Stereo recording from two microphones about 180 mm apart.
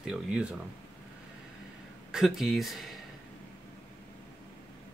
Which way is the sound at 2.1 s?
Centre (ahead or behind).